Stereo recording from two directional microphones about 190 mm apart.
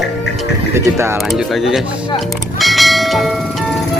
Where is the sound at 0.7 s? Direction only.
15° right (ahead or behind).